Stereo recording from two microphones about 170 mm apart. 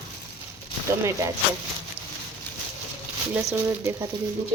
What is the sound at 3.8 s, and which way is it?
Speech, 15° right (ahead or behind).